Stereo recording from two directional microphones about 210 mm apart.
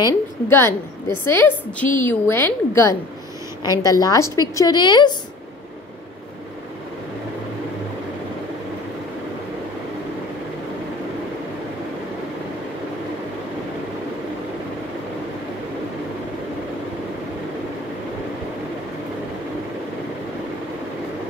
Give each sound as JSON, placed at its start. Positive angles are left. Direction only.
{"t": 0.0, "sound": "a woman's voice", "side_deg": 10}